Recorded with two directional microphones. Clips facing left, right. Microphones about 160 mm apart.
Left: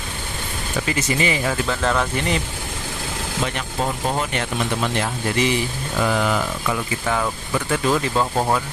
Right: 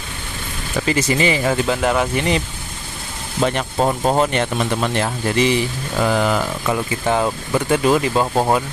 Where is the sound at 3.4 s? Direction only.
50° right (ahead or behind).